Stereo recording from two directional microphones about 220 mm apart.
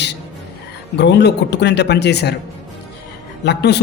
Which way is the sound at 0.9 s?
50° left (ahead or behind).